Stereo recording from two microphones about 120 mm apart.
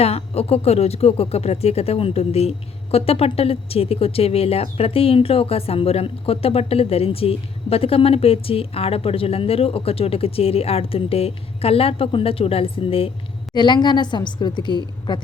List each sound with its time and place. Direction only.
0.0 s speech: 55° left (ahead or behind)
13.5 s a woman's voice: 40° left (ahead or behind)